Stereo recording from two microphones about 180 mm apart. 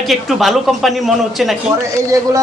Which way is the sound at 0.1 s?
Centre (ahead or behind).